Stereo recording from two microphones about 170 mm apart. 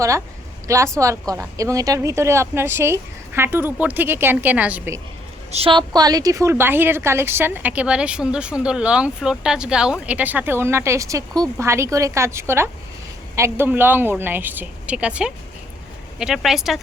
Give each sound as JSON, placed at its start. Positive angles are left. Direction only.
{"t": 0.7, "sound": "a woman's voice", "side_deg": -15}
{"t": 5.5, "sound": "a woman's voice", "side_deg": -35}